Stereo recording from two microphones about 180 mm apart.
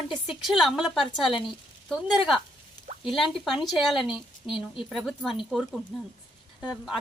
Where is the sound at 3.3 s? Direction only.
Centre (ahead or behind).